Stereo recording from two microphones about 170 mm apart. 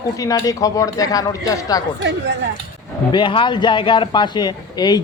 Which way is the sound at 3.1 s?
30° left (ahead or behind).